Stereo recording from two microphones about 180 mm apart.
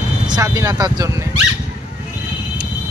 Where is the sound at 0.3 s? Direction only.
20° right (ahead or behind).